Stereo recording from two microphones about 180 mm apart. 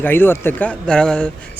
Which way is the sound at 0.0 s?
10° left (ahead or behind).